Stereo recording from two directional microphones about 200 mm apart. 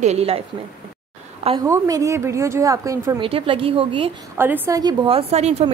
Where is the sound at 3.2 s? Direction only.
25° right (ahead or behind).